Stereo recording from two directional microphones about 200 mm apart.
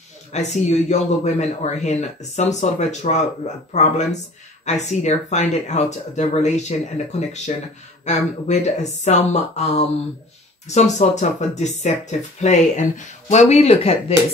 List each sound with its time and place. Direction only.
0.3 s speech: 35° left (ahead or behind)